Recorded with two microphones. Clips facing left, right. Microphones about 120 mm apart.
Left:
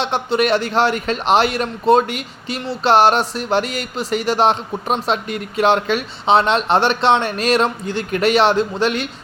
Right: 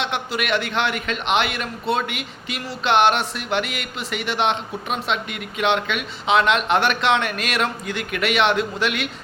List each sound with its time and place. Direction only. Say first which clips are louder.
0.0 s speech: left 7 dB; 35° left (ahead or behind)